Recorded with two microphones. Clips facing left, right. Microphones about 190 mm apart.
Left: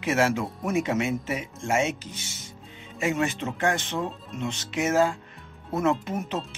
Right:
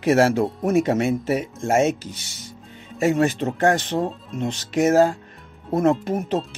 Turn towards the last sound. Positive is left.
turn(degrees=-40)  # may be behind; listen again after turning